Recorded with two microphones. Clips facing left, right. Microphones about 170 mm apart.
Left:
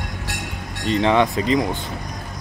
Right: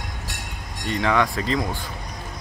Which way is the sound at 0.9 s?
20° left (ahead or behind).